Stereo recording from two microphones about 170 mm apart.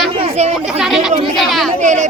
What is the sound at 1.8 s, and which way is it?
Speech, 45° right (ahead or behind).